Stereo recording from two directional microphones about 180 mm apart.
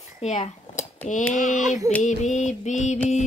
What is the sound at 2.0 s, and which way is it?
Speech, 40° left (ahead or behind).